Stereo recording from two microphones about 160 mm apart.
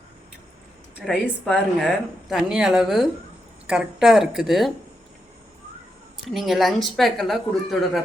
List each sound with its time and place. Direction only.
1.1 s speech: 5° left (ahead or behind)
6.2 s speech: centre (ahead or behind)